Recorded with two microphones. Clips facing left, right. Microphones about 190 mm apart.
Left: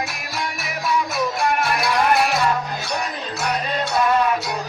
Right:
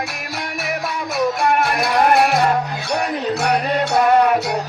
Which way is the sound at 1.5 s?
55° right (ahead or behind).